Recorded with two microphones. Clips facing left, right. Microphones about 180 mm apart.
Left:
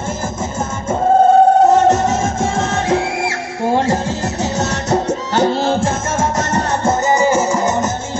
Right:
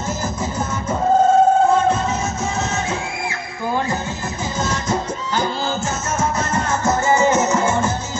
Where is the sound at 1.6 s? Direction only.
75° left (ahead or behind).